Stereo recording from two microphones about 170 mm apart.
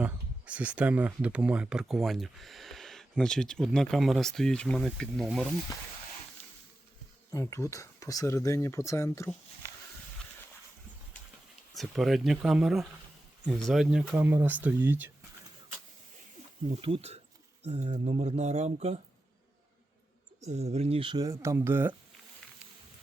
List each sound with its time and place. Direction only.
0.0 s speech: 10° right (ahead or behind)
7.3 s speech: 15° left (ahead or behind)
11.7 s speech: centre (ahead or behind)
16.6 s speech: 35° right (ahead or behind)
20.4 s speech: 40° right (ahead or behind); by 21.9 s 15° right (ahead or behind)